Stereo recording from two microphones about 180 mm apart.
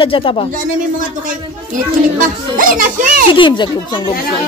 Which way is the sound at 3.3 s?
25° left (ahead or behind).